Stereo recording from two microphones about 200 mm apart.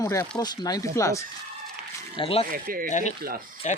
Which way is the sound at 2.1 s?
25° left (ahead or behind).